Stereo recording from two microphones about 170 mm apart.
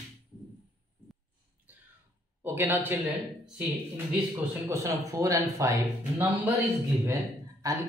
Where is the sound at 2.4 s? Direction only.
10° right (ahead or behind).